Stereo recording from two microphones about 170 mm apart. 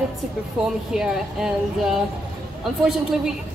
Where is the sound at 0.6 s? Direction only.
5° right (ahead or behind).